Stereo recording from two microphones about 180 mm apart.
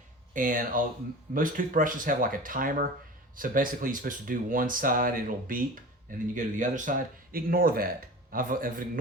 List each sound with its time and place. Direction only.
0.3 s speech: 50° right (ahead or behind)